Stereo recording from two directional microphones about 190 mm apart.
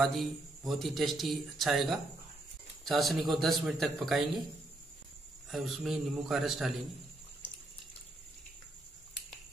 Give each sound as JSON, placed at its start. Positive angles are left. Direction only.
{"t": 0.0, "sound": "a man's voice", "side_deg": 0}
{"t": 5.5, "sound": "a man's voice", "side_deg": 0}